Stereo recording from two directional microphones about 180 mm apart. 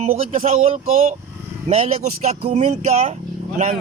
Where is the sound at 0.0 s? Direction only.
35° right (ahead or behind).